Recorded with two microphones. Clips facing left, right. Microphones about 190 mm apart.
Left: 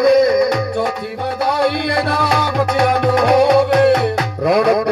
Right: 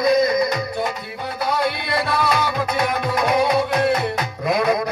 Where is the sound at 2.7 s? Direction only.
70° left (ahead or behind).